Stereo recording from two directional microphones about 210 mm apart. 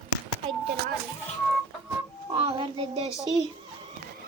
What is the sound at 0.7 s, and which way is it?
Music, 45° right (ahead or behind).